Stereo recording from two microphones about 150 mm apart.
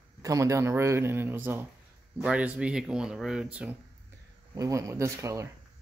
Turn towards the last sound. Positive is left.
turn(degrees=-20)  # may be behind; listen again after turning